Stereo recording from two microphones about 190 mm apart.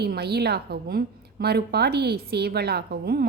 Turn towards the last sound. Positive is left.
turn(degrees=-55)  # may be behind; listen again after turning